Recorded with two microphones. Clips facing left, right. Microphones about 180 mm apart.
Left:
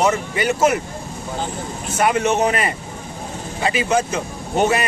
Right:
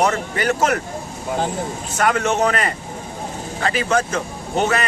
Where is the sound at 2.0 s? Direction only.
15° left (ahead or behind).